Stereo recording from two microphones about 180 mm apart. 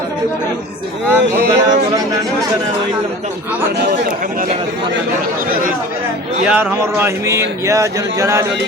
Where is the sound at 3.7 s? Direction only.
65° right (ahead or behind).